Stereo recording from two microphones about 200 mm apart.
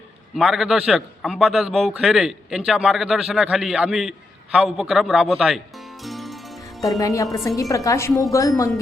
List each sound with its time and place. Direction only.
0.3 s a man's voice: 5° right (ahead or behind)
6.0 s music: centre (ahead or behind)
7.0 s speech: 15° left (ahead or behind)